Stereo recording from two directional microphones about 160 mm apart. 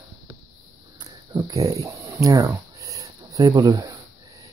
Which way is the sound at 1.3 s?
25° right (ahead or behind).